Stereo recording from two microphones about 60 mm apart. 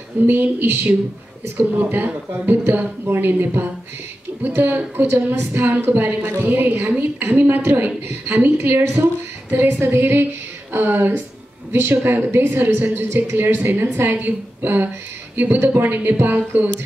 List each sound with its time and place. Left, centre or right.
0.3 s speech: right
1.8 s speech: right